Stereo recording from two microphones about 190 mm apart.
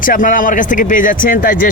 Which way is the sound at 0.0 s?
45° left (ahead or behind).